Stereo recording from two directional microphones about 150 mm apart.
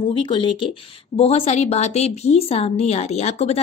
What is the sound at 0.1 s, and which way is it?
A woman's voice, 35° left (ahead or behind).